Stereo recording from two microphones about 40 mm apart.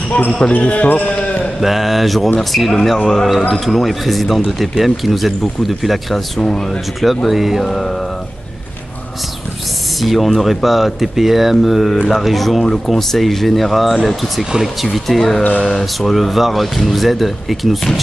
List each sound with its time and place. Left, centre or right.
0.2 s speech: left
1.0 s a man's voice: left
1.6 s speech: centre
6.4 s speech: centre
7.2 s speech: centre
7.6 s speech: centre
9.9 s speech: centre